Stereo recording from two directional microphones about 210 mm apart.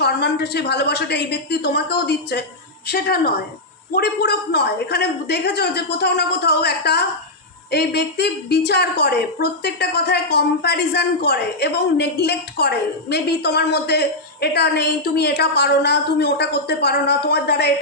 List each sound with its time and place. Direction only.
0.0 s a woman's voice: 50° left (ahead or behind)